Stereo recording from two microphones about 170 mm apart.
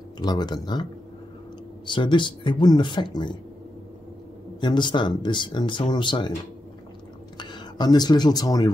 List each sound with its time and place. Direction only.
0.2 s speech: 25° left (ahead or behind)
1.9 s speech: 30° left (ahead or behind)
4.6 s speech: 25° left (ahead or behind)
7.3 s speech: 25° left (ahead or behind)